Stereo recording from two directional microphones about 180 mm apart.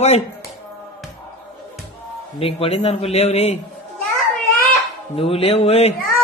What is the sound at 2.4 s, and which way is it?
A man's voice, 30° left (ahead or behind).